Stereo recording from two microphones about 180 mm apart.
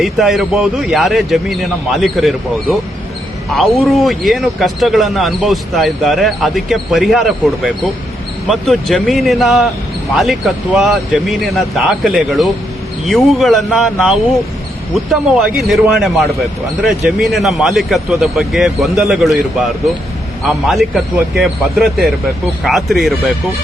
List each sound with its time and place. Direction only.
0.0 s speech: centre (ahead or behind)
20.5 s speech: centre (ahead or behind)